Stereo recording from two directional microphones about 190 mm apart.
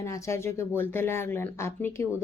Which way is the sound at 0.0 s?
15° left (ahead or behind).